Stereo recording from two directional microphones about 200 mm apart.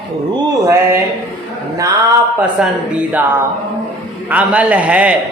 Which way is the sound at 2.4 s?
5° right (ahead or behind).